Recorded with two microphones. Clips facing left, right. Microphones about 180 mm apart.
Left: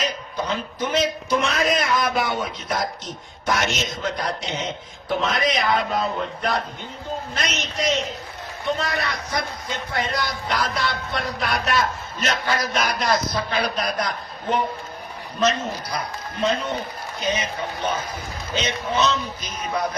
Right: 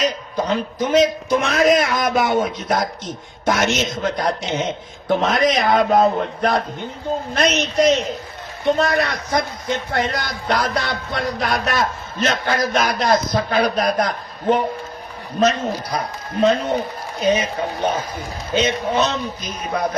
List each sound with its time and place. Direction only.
0.0 s speech: 45° right (ahead or behind)
16.0 s speech: 40° right (ahead or behind)
18.5 s speech: 55° right (ahead or behind)